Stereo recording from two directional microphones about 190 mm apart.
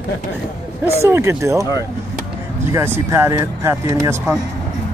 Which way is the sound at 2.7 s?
10° right (ahead or behind).